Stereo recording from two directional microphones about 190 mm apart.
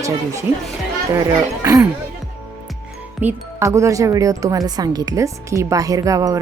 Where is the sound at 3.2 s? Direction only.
15° right (ahead or behind).